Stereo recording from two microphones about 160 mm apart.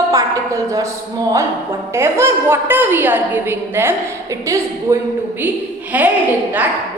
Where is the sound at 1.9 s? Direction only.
15° right (ahead or behind).